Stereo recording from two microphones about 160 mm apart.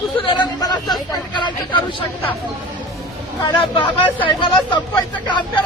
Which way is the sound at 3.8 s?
30° left (ahead or behind).